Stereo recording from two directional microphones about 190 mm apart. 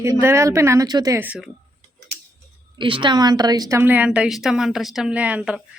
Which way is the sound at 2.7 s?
25° right (ahead or behind).